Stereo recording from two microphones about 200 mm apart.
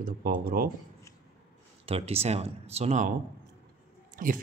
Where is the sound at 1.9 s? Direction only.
30° right (ahead or behind).